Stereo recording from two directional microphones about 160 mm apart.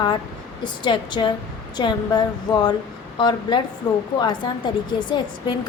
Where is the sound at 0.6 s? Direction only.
30° left (ahead or behind).